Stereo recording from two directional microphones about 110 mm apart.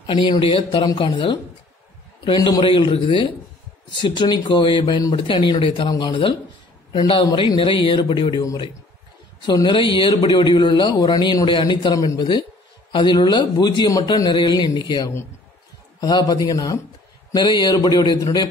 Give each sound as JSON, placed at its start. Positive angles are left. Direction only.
{"t": 0.0, "sound": "speech", "side_deg": 40}
{"t": 0.4, "sound": "a man's voice", "side_deg": 55}
{"t": 5.9, "sound": "a man's voice", "side_deg": 40}
{"t": 9.5, "sound": "a man's voice", "side_deg": 45}